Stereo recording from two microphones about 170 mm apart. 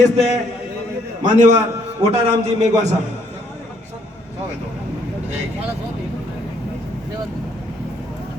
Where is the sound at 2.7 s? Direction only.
40° right (ahead or behind).